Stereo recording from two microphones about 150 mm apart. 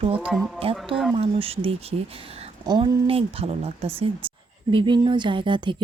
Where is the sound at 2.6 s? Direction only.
30° right (ahead or behind).